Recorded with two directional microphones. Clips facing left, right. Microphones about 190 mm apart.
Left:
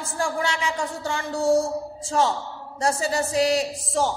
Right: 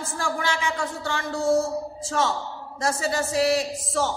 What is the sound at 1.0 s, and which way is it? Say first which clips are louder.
A woman's voice: left 2 dB; 30° left (ahead or behind).